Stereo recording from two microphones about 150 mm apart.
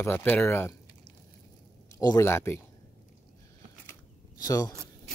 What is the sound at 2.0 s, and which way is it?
Speech, 20° left (ahead or behind).